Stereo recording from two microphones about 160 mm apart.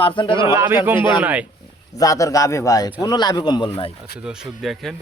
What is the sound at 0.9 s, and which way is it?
Speech, 30° left (ahead or behind).